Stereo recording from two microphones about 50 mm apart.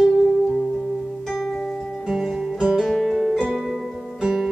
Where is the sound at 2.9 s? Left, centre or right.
Centre.